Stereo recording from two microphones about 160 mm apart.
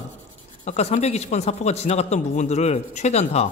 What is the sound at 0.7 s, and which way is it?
Speech, 45° left (ahead or behind).